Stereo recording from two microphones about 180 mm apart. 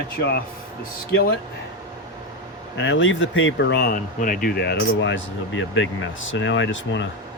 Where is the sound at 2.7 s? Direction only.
90° left.